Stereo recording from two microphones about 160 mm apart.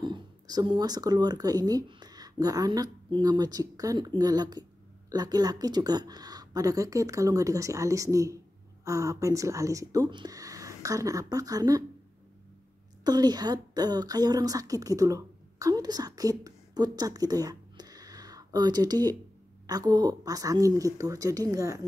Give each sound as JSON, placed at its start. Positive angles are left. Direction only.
{"t": 0.0, "sound": "speech", "side_deg": -25}
{"t": 13.0, "sound": "a woman's voice", "side_deg": -25}